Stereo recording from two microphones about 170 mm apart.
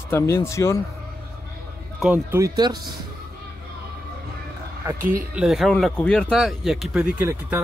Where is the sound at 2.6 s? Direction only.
25° right (ahead or behind).